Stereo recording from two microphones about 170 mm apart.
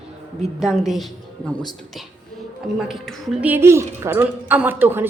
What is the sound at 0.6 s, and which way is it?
Speech, centre (ahead or behind).